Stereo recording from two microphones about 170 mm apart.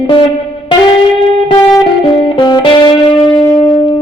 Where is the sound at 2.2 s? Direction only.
25° left (ahead or behind).